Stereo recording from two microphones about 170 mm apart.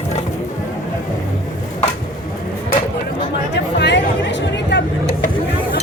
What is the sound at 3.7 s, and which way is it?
Music, 90° left.